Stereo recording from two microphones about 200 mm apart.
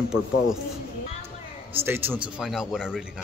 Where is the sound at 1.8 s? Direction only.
10° right (ahead or behind).